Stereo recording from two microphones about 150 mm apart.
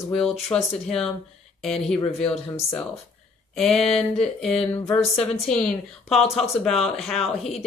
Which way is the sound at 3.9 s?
5° left (ahead or behind).